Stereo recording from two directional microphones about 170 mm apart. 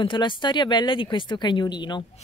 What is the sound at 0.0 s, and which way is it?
Speech, 25° left (ahead or behind).